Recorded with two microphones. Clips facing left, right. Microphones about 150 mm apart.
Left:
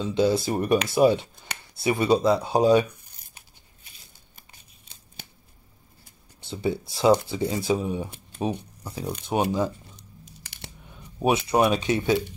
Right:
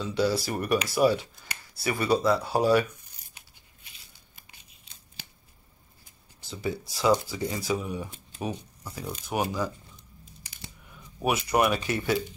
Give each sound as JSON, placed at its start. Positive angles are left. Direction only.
{"t": 0.0, "sound": "speech", "side_deg": 20}
{"t": 6.4, "sound": "speech", "side_deg": 25}
{"t": 9.9, "sound": "a sound", "side_deg": 80}
{"t": 11.0, "sound": "speech", "side_deg": 25}